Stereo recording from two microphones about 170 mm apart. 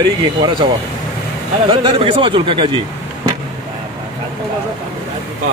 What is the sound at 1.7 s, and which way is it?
Speech, 30° right (ahead or behind).